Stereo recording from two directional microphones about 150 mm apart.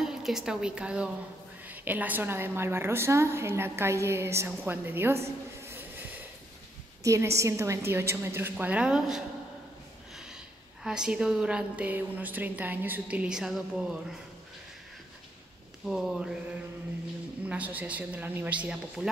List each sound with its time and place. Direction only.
0.0 s a woman's voice: 5° right (ahead or behind)
10.8 s a woman's voice: 5° right (ahead or behind)
15.8 s speech: centre (ahead or behind)
17.5 s a woman's voice: 10° right (ahead or behind)